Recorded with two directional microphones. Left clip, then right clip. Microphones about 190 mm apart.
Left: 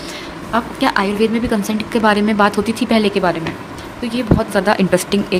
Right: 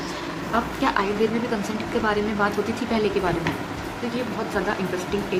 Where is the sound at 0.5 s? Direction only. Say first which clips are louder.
Left 6 dB; 55° left (ahead or behind).